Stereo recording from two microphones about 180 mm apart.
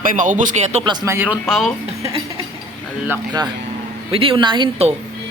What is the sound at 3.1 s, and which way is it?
Speech, 20° right (ahead or behind).